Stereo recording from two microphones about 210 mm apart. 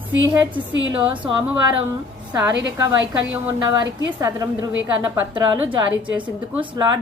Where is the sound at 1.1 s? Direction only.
25° right (ahead or behind).